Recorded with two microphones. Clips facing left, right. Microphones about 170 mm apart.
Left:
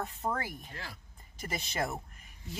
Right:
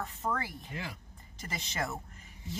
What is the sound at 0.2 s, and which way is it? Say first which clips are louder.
Speech: right 1 dB; 15° left (ahead or behind).